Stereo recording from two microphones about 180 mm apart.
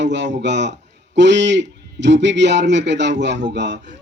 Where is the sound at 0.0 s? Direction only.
80° right.